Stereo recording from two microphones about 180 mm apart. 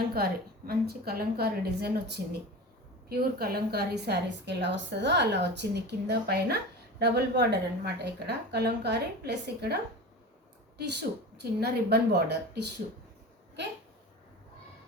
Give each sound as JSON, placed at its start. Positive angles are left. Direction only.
{"t": 0.1, "sound": "a woman's voice", "side_deg": -55}
{"t": 10.8, "sound": "a woman's voice", "side_deg": -65}